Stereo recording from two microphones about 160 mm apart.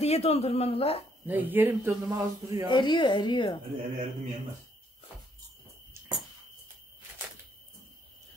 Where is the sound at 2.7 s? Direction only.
30° left (ahead or behind).